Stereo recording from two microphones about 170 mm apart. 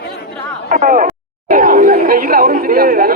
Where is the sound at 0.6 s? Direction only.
50° right (ahead or behind).